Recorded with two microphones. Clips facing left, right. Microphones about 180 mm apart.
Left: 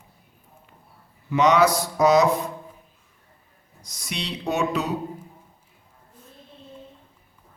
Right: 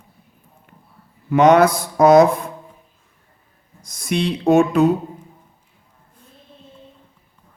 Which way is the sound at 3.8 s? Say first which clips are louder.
Right 12 dB; 50° right (ahead or behind).